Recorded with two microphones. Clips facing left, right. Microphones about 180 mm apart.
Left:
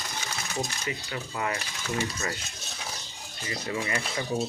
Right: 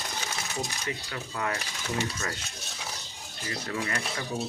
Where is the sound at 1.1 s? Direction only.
5° left (ahead or behind).